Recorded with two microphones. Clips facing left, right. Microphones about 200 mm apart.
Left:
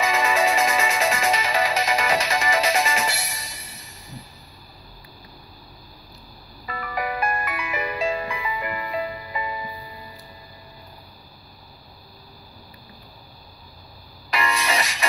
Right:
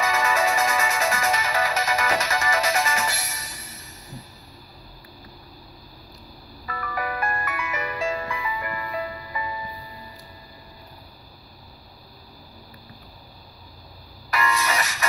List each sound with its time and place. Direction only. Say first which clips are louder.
0.0 s music: left 2 dB; 15° left (ahead or behind)
6.6 s music: left 2 dB; 20° left (ahead or behind)
14.3 s music: even; 20° left (ahead or behind)